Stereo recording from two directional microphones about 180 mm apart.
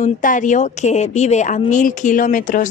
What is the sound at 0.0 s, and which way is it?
A woman's voice, 45° left (ahead or behind).